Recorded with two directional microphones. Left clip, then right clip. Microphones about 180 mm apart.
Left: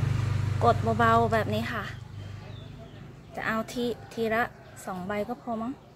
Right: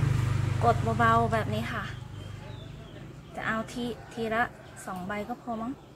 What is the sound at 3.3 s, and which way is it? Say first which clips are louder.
A woman's voice: left 2 dB; 50° left (ahead or behind).